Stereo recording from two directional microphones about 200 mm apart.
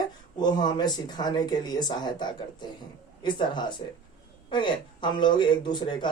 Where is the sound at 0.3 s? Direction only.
20° left (ahead or behind).